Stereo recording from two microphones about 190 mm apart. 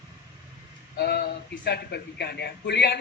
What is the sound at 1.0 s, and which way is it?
Speech, 60° left (ahead or behind).